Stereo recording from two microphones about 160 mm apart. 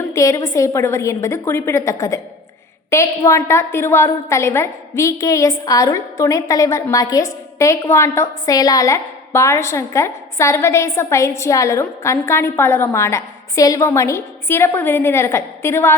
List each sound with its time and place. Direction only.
0.1 s a woman's voice: 20° left (ahead or behind)